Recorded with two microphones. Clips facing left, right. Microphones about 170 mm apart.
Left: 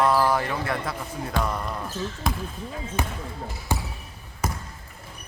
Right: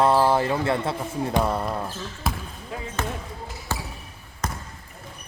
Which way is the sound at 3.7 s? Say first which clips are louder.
Left 3 dB; 15° left (ahead or behind).